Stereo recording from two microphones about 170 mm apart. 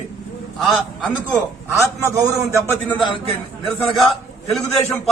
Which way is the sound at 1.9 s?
15° right (ahead or behind).